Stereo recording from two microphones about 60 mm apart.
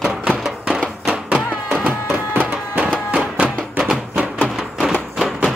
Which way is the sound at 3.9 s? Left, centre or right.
Centre.